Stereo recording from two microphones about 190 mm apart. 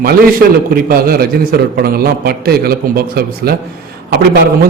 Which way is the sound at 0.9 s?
50° right (ahead or behind).